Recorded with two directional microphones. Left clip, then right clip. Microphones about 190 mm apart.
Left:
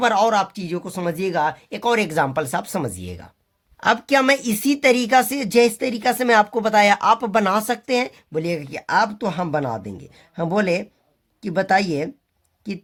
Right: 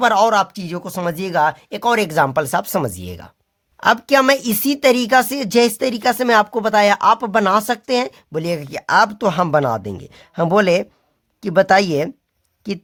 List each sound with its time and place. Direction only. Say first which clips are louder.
0.0 s speech: right 3 dB; 35° right (ahead or behind)